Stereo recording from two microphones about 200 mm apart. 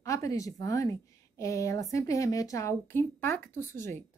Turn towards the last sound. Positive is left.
turn(degrees=15)  # may be behind; listen again after turning